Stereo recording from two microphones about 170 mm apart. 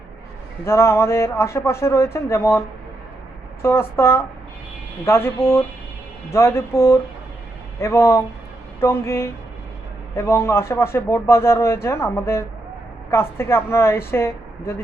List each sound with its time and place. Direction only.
0.6 s speech: 15° left (ahead or behind)